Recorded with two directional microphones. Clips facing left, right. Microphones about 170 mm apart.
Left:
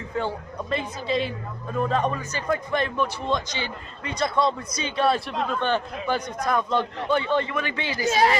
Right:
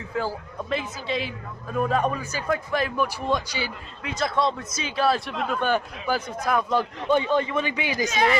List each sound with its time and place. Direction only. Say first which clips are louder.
0.1 s a man's voice: even; centre (ahead or behind)